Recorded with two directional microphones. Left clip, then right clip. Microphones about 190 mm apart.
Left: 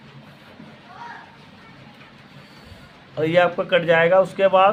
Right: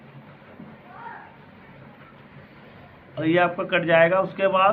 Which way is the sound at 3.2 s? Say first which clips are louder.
Left 3 dB; 70° left (ahead or behind).